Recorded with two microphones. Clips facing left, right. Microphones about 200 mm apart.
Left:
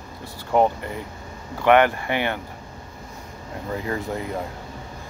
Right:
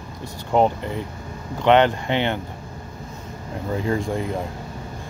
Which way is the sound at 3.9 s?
25° right (ahead or behind).